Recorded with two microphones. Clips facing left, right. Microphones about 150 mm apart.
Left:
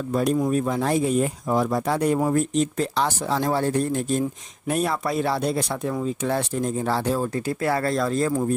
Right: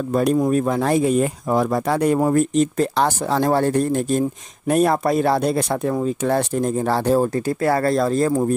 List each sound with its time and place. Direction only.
0.1 s speech: 55° right (ahead or behind)